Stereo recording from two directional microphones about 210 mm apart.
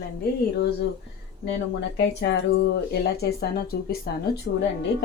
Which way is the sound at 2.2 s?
55° left (ahead or behind).